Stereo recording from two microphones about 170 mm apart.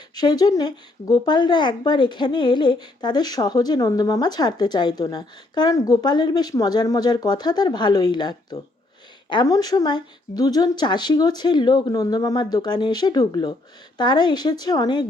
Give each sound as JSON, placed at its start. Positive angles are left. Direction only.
{"t": 0.2, "sound": "speech", "side_deg": 25}